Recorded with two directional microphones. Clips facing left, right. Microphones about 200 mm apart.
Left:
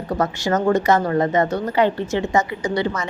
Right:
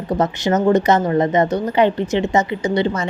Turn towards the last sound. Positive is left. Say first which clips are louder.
# right 3 dB
turn(degrees=-25)  # may be behind; listen again after turning